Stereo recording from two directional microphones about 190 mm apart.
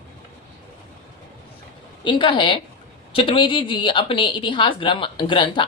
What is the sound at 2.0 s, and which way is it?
Speech, 25° left (ahead or behind).